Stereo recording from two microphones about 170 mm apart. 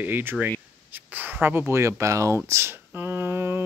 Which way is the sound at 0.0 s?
10° right (ahead or behind).